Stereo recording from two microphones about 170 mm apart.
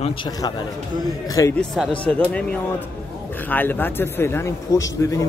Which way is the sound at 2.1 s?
10° left (ahead or behind).